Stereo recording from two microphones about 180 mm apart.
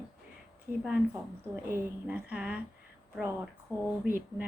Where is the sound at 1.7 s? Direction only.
10° right (ahead or behind).